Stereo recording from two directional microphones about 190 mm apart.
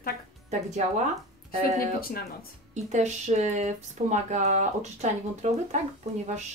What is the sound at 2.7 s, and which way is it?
Speech, 40° right (ahead or behind).